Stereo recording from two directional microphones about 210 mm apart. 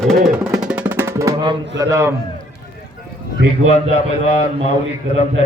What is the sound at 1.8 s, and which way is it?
Speech, 15° right (ahead or behind).